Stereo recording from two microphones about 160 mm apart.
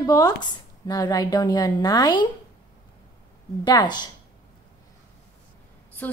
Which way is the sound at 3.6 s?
25° left (ahead or behind).